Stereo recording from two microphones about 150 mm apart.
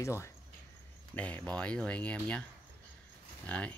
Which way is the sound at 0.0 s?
20° left (ahead or behind).